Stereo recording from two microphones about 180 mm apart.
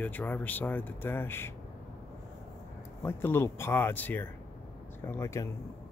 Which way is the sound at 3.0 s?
15° left (ahead or behind).